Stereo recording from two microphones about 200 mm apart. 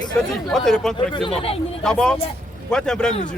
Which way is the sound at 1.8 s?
5° left (ahead or behind).